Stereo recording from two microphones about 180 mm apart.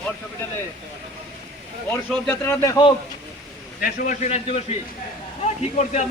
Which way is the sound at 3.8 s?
45° left (ahead or behind).